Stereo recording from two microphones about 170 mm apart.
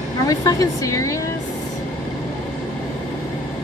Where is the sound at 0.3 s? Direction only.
20° left (ahead or behind).